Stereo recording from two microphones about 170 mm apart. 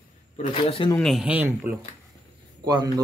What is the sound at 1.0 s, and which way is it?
Speech, centre (ahead or behind).